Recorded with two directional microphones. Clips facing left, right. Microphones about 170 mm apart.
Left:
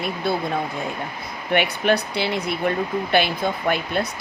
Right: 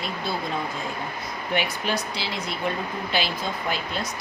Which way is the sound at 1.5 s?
65° left (ahead or behind).